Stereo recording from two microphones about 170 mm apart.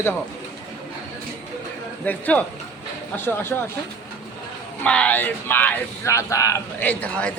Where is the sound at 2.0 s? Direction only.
10° left (ahead or behind).